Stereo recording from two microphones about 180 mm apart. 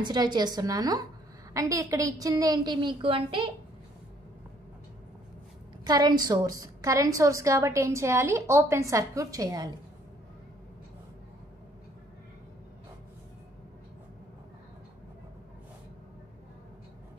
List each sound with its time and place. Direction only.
0.0 s a woman's voice: 25° right (ahead or behind)
5.9 s a woman's voice: 20° right (ahead or behind)